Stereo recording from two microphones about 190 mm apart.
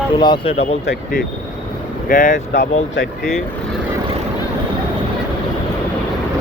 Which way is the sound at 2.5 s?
65° left (ahead or behind).